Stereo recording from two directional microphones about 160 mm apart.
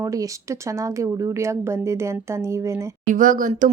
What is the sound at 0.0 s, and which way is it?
A woman's voice, 20° right (ahead or behind).